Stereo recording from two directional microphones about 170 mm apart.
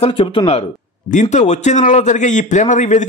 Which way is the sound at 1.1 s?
45° left (ahead or behind).